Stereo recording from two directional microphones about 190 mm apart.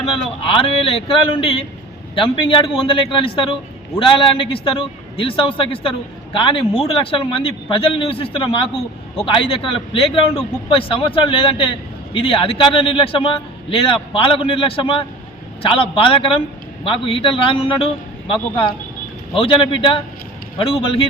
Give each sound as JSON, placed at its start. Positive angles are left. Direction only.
{"t": 0.0, "sound": "speech", "side_deg": 30}